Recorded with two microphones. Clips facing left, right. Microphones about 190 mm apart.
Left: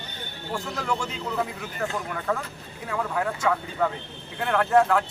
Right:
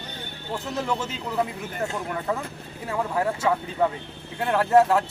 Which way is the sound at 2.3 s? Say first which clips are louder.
Even; 20° right (ahead or behind).